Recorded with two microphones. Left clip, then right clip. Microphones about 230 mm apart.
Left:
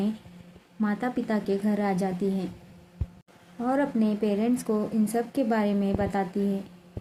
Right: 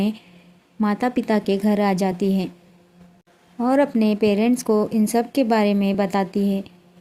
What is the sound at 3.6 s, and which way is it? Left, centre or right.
Speech, right.